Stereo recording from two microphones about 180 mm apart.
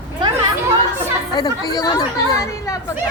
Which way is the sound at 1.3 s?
20° left (ahead or behind).